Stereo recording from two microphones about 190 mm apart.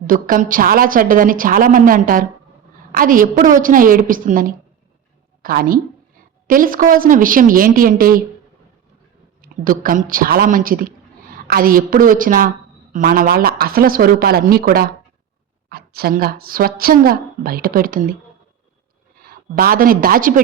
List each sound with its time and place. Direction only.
0.1 s a woman's voice: 45° right (ahead or behind)
9.4 s a woman's voice: 50° right (ahead or behind)
19.1 s a woman's voice: 50° right (ahead or behind)